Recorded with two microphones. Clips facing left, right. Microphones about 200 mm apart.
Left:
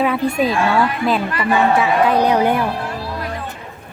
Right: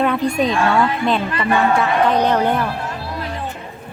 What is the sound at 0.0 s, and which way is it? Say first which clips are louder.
A woman's voice: even; 5° left (ahead or behind).